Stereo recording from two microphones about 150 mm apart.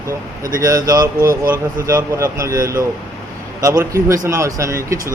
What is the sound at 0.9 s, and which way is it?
Speech, 20° right (ahead or behind).